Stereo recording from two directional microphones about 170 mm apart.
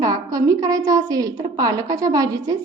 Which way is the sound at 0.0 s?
20° right (ahead or behind).